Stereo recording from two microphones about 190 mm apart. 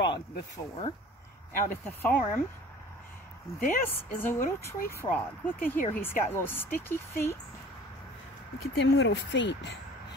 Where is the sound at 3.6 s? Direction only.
50° left (ahead or behind).